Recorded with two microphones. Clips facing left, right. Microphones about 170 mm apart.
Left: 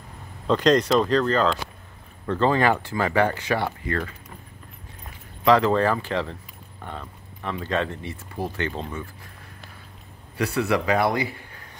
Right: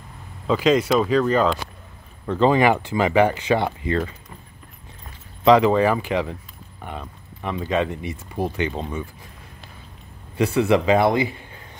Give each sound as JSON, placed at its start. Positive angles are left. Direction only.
{"t": 0.5, "sound": "speech", "side_deg": -5}
{"t": 5.4, "sound": "speech", "side_deg": -15}
{"t": 10.3, "sound": "a man's voice", "side_deg": -20}